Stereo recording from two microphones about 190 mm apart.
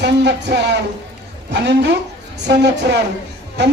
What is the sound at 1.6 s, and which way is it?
Speech, 65° right (ahead or behind).